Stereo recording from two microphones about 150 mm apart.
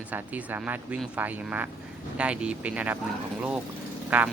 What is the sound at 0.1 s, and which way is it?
Speech, 10° right (ahead or behind).